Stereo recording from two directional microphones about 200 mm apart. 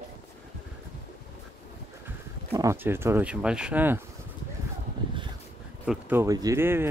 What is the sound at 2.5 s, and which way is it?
Speech, 15° right (ahead or behind).